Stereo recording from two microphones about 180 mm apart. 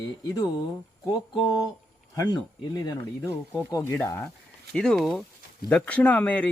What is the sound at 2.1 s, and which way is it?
Speech, 20° left (ahead or behind).